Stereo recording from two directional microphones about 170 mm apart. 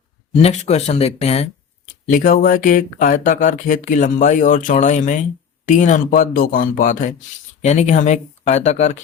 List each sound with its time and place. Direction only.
0.4 s speech: 40° left (ahead or behind)
2.0 s speech: 55° left (ahead or behind)
7.6 s speech: 40° left (ahead or behind)